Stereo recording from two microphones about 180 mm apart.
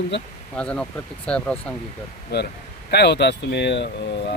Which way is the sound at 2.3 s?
65° left (ahead or behind).